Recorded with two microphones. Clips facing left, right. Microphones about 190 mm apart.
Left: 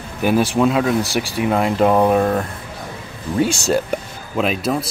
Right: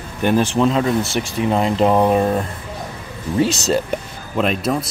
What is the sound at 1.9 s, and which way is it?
Speech, 5° right (ahead or behind).